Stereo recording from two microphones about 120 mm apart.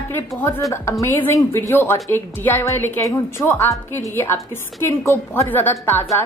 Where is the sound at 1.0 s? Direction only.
20° left (ahead or behind).